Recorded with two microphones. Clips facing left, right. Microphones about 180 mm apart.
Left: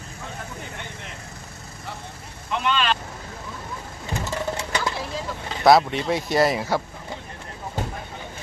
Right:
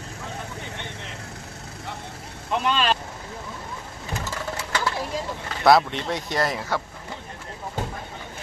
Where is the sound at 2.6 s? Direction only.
35° right (ahead or behind).